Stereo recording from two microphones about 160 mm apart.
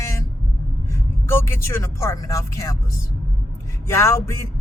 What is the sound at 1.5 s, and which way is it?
Speech, 15° left (ahead or behind).